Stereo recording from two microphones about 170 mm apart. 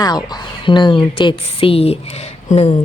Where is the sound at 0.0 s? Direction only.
25° left (ahead or behind).